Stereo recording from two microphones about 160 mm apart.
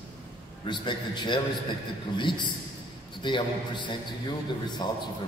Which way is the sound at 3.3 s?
30° left (ahead or behind).